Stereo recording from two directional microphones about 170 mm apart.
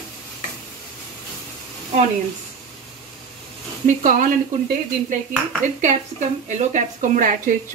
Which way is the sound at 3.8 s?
50° right (ahead or behind).